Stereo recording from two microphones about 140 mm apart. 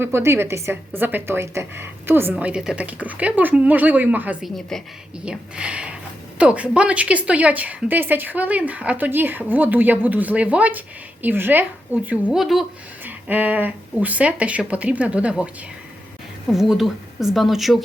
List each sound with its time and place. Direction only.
0.0 s a woman's voice: 20° right (ahead or behind)
16.5 s a woman's voice: 5° right (ahead or behind)